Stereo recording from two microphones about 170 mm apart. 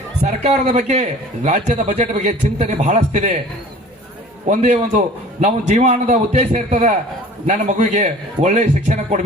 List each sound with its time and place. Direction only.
0.2 s a man's voice: 45° right (ahead or behind)
4.4 s a man's voice: 45° right (ahead or behind)